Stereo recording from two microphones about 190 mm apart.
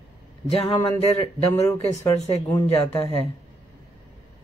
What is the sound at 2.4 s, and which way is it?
Speech, 5° left (ahead or behind).